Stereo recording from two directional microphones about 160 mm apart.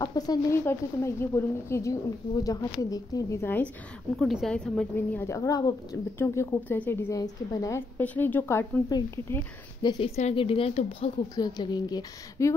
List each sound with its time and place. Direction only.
0.0 s a woman's voice: 25° left (ahead or behind)
4.2 s a woman's voice: centre (ahead or behind)
4.9 s a woman's voice: 15° left (ahead or behind)
9.8 s speech: 30° left (ahead or behind)
11.3 s a woman's voice: 25° left (ahead or behind)